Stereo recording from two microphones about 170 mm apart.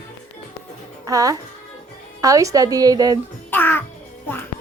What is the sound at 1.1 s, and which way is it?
A woman's voice, 20° right (ahead or behind).